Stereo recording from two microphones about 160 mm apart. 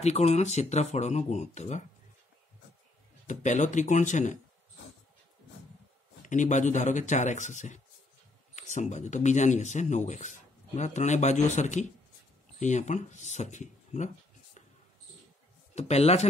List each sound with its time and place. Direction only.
0.0 s speech: 45° left (ahead or behind)
3.3 s speech: 50° left (ahead or behind)
6.2 s speech: 50° left (ahead or behind)
15.7 s speech: 45° left (ahead or behind)